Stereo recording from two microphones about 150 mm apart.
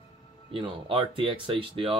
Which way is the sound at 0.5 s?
35° right (ahead or behind).